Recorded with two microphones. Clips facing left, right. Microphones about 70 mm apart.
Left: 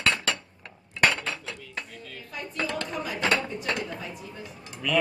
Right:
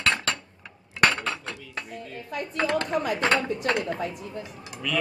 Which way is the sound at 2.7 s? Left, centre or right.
Right.